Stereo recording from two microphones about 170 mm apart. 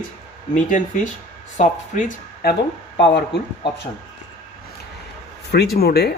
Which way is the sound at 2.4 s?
65° left (ahead or behind).